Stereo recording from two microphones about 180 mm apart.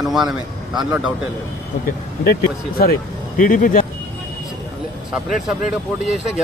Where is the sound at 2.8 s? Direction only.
55° left (ahead or behind).